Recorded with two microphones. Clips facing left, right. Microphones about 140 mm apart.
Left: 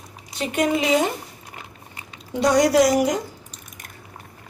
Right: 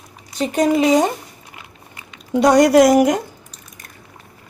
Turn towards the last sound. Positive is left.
turn(degrees=-55)  # may be behind; listen again after turning